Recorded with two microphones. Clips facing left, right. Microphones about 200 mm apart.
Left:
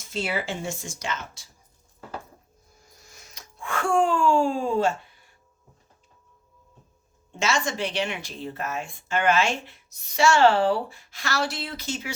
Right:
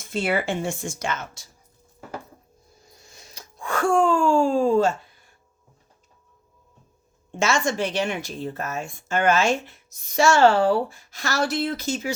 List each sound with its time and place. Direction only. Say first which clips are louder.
0.0 s speech: right 5 dB; 55° right (ahead or behind)
3.1 s speech: right 3 dB; 30° right (ahead or behind)
7.3 s speech: right 3 dB; 50° right (ahead or behind)